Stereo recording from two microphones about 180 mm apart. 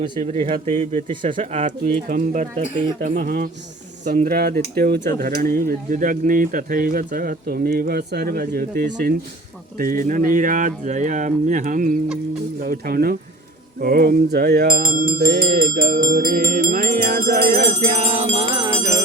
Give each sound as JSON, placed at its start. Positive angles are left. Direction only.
{"t": 0.2, "sound": "speech", "side_deg": -35}
{"t": 1.4, "sound": "speech", "side_deg": -40}
{"t": 5.2, "sound": "speech", "side_deg": -50}
{"t": 15.8, "sound": "music", "side_deg": -55}